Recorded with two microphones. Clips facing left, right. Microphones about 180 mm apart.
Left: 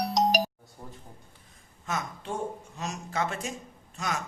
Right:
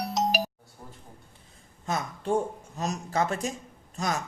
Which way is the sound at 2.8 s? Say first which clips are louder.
Right 4 dB; 40° right (ahead or behind).